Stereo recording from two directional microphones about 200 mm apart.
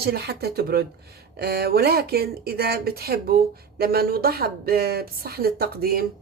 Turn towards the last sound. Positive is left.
turn(degrees=-50)  # may be behind; listen again after turning